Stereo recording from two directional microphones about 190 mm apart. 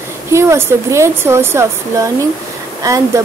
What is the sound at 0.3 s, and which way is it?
A woman's voice, 15° right (ahead or behind).